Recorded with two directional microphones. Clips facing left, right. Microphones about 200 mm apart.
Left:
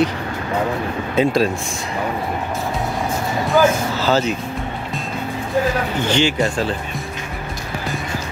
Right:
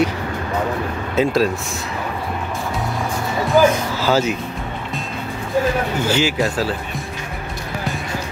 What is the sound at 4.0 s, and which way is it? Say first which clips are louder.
Speech: right 1 dB; 10° right (ahead or behind).